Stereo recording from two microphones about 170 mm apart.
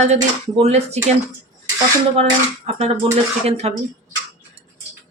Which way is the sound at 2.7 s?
40° right (ahead or behind).